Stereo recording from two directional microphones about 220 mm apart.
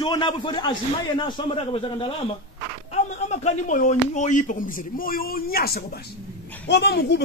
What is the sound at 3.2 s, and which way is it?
Speech, 30° left (ahead or behind).